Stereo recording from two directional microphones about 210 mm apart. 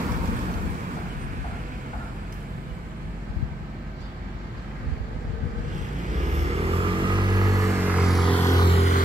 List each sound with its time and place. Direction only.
6.3 s vehicle: 30° right (ahead or behind); by 8.4 s centre (ahead or behind)
8.5 s music: 20° left (ahead or behind)